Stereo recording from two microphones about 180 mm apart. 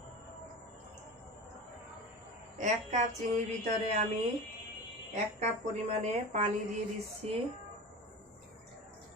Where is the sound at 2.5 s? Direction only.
40° right (ahead or behind).